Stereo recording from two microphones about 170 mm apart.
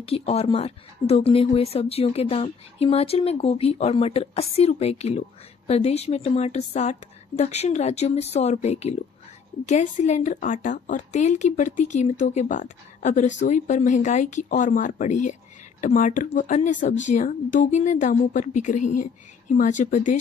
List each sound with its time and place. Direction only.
0.0 s a woman's voice: 35° left (ahead or behind)